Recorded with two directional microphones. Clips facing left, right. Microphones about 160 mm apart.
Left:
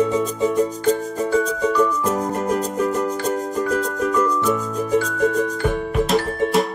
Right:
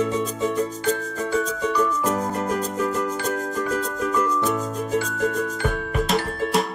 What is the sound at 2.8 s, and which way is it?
Music, 35° left (ahead or behind).